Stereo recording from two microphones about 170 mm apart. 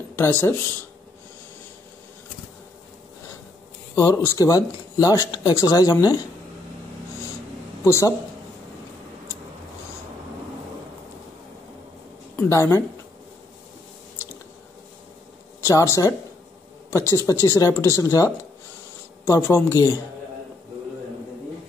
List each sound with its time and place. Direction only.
0.1 s speech: 15° left (ahead or behind)
3.9 s speech: 20° left (ahead or behind)
7.8 s a man's voice: 15° left (ahead or behind)
12.4 s speech: 15° left (ahead or behind)
15.6 s speech: 15° left (ahead or behind)
17.3 s speech: 20° left (ahead or behind)